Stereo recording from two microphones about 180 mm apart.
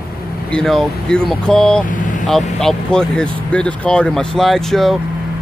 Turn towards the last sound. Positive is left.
turn(degrees=0)  # may be behind; listen again after turning